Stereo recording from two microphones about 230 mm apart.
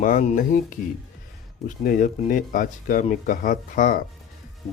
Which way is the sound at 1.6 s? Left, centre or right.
Left.